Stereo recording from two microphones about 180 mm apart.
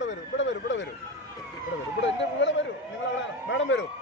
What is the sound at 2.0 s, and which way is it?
Emergency vehicle, 85° left.